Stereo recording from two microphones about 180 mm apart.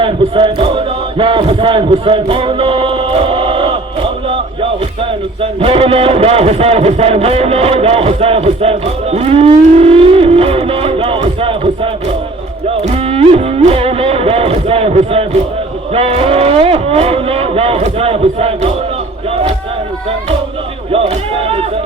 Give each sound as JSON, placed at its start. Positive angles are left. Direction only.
{"t": 0.0, "sound": "a man's voice", "side_deg": -30}
{"t": 5.4, "sound": "speech", "side_deg": -30}
{"t": 12.9, "sound": "speech", "side_deg": -35}
{"t": 20.9, "sound": "speech", "side_deg": -35}